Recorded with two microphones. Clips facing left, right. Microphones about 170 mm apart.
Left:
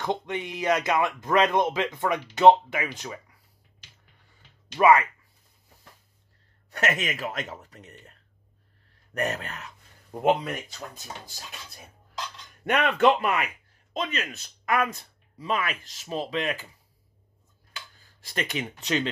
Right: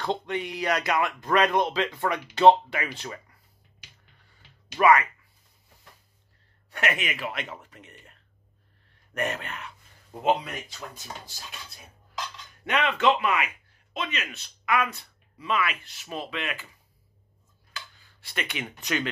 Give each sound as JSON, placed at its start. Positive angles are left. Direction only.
{"t": 0.0, "sound": "speech", "side_deg": 15}
{"t": 4.7, "sound": "speech", "side_deg": 25}
{"t": 6.7, "sound": "speech", "side_deg": 40}
{"t": 10.1, "sound": "speech", "side_deg": 50}
{"t": 12.6, "sound": "speech", "side_deg": 55}
{"t": 17.9, "sound": "speech", "side_deg": 40}